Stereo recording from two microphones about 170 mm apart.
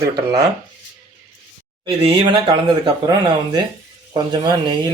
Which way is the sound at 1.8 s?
30° right (ahead or behind).